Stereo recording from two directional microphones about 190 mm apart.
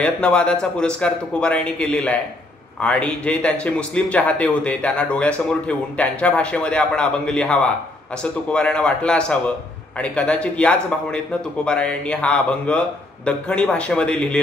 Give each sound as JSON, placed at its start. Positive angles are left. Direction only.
{"t": 0.0, "sound": "speech", "side_deg": 5}